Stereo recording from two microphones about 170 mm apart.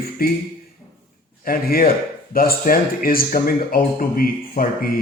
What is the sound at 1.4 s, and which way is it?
Speech, 60° left (ahead or behind).